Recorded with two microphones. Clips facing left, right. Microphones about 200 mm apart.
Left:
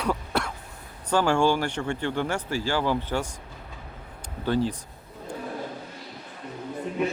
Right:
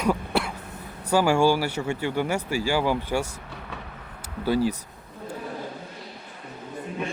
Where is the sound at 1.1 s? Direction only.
10° right (ahead or behind).